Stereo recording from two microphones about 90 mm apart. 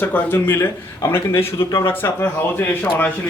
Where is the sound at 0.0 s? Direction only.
25° left (ahead or behind).